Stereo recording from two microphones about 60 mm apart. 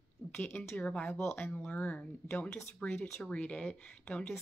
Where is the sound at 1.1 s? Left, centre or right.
Left.